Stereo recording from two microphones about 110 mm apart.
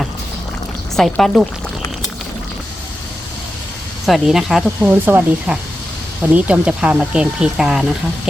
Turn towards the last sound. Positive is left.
turn(degrees=-5)  # may be behind; listen again after turning